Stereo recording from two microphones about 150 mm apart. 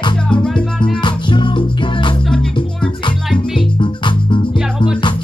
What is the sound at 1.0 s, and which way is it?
Music, 35° left (ahead or behind).